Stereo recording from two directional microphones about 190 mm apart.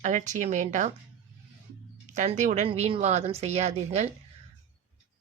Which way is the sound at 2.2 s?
40° right (ahead or behind).